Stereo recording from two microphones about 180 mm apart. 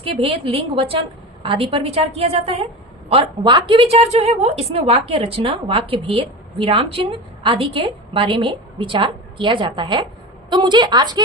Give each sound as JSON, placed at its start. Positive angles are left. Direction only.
{"t": 0.0, "sound": "a woman's voice", "side_deg": -30}